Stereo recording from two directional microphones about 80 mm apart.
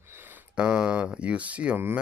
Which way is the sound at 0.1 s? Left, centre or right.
Right.